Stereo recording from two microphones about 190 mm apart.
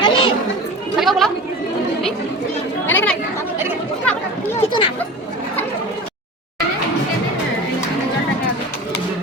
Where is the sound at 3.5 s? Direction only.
10° right (ahead or behind).